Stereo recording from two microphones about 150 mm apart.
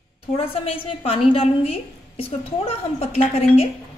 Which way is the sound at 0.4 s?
40° left (ahead or behind).